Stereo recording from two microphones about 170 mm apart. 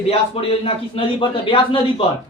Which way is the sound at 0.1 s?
35° left (ahead or behind).